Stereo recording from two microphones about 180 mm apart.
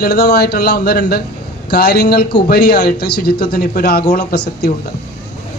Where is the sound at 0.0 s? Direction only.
65° left (ahead or behind).